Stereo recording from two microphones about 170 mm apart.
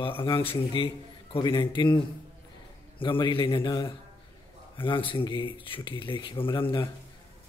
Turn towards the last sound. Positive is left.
turn(degrees=30)  # may be behind; listen again after turning